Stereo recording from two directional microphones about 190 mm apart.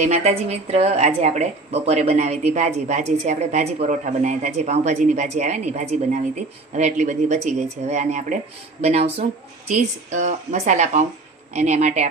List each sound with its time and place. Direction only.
0.0 s speech: 35° right (ahead or behind)